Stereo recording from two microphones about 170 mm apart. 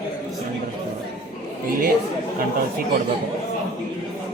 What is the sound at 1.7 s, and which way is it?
Chatter, 60° right (ahead or behind).